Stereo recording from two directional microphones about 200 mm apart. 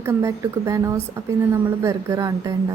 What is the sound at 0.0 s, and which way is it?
A woman's voice, 15° right (ahead or behind).